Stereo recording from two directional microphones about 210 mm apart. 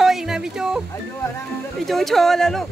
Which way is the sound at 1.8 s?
Centre (ahead or behind).